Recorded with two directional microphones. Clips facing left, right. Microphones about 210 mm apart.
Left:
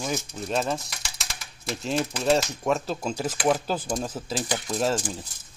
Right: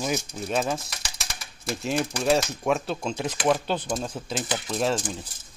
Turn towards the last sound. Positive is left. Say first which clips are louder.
# even
turn(degrees=0)  # may be behind; listen again after turning